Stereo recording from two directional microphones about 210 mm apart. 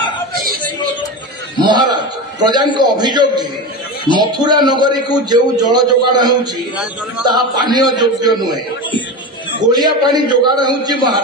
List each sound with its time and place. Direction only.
0.3 s a sound: 45° right (ahead or behind)
1.6 s a man's voice: 20° right (ahead or behind)
9.7 s a man's voice: 20° right (ahead or behind)